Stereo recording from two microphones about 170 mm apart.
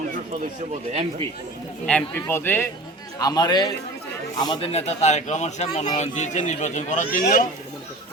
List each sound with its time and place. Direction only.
1.9 s a man's voice: 10° left (ahead or behind); by 4.7 s 25° left (ahead or behind)
4.7 s speech: 40° left (ahead or behind); by 7.4 s 55° left (ahead or behind)